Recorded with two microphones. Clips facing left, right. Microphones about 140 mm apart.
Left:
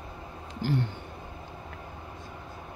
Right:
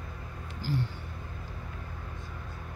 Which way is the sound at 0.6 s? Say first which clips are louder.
Left 4 dB; 60° left (ahead or behind).